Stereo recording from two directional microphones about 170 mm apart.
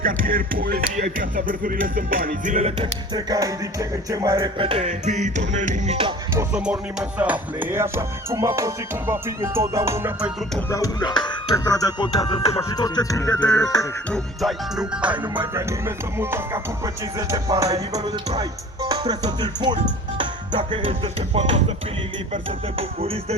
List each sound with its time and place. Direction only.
0.0 s music: 55° right (ahead or behind)
6.5 s music: 5° right (ahead or behind)
10.7 s speech: 20° left (ahead or behind)
12.6 s speech: 20° left (ahead or behind)
14.1 s music: centre (ahead or behind); by 18.1 s 20° right (ahead or behind)
18.3 s speech: 20° right (ahead or behind)